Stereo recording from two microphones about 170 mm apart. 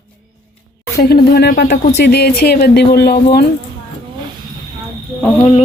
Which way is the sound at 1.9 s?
75° left (ahead or behind).